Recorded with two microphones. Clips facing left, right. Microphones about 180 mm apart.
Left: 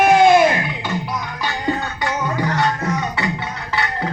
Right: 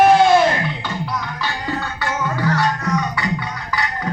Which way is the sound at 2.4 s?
20° left (ahead or behind).